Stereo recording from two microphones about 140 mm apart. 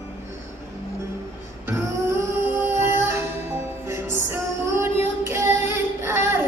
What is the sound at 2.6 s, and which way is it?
Music, 15° right (ahead or behind).